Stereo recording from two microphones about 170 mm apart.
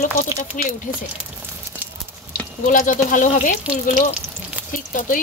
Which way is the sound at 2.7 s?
50° left (ahead or behind).